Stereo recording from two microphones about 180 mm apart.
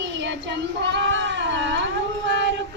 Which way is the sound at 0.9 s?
80° right.